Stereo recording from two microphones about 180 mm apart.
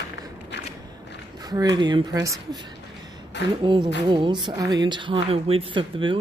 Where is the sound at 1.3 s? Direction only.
20° right (ahead or behind).